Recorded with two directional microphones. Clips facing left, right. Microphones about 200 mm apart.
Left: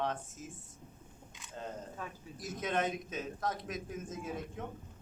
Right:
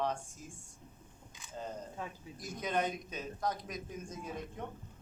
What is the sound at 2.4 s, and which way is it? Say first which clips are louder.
A man's voice: even; centre (ahead or behind).